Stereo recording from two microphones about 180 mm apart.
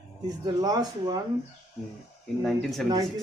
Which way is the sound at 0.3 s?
20° right (ahead or behind).